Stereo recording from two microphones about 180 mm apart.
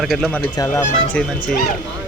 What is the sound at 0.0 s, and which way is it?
Speech, centre (ahead or behind).